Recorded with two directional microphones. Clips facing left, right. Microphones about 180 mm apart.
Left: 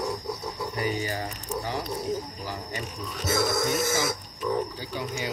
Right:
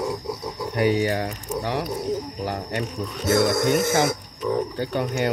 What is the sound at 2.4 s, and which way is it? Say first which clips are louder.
Cricket: right 7 dB; 65° right (ahead or behind).